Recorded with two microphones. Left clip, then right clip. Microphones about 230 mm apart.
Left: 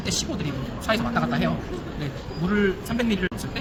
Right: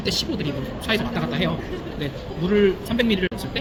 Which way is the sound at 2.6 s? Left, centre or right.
Centre.